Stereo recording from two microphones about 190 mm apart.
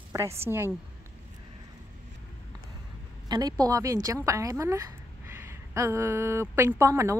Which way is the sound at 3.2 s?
20° right (ahead or behind).